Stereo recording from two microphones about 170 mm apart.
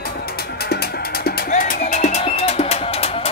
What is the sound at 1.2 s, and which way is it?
Music, 55° left (ahead or behind).